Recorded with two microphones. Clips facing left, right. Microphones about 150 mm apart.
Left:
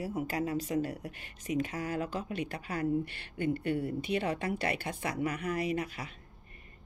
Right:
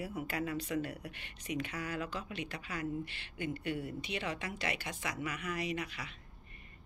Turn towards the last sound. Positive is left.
turn(degrees=50)  # may be behind; listen again after turning